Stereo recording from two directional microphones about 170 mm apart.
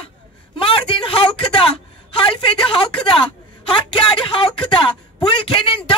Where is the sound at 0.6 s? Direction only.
30° left (ahead or behind).